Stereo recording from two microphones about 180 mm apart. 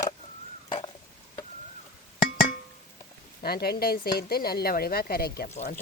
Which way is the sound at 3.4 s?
60° left (ahead or behind).